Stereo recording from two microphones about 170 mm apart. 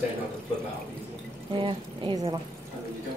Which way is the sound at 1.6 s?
30° right (ahead or behind).